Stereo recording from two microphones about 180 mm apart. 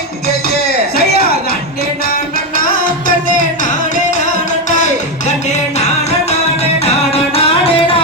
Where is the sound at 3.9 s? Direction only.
45° left (ahead or behind).